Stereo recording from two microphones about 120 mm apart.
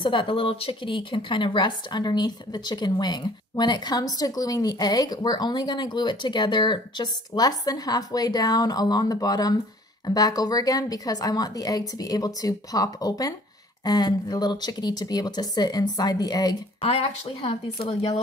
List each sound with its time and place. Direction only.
0.0 s speech: 45° left (ahead or behind)
16.8 s speech: 55° left (ahead or behind)